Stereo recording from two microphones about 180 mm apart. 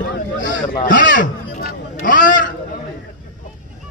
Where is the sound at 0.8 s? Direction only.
45° left (ahead or behind).